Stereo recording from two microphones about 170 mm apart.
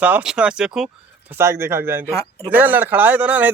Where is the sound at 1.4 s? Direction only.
15° right (ahead or behind).